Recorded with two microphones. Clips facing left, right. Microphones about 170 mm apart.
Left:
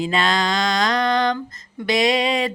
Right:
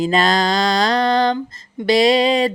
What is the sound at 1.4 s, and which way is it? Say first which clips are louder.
Mantra: right 4 dB; 25° right (ahead or behind).